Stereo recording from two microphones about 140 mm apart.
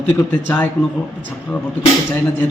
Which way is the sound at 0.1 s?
10° left (ahead or behind).